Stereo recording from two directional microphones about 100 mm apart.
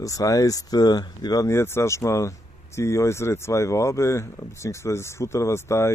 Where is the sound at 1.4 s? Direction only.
25° left (ahead or behind).